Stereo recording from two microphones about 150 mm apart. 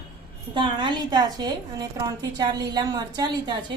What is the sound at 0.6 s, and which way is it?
A woman's voice, 30° right (ahead or behind).